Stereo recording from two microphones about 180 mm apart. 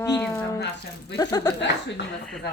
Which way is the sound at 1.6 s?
75° left (ahead or behind).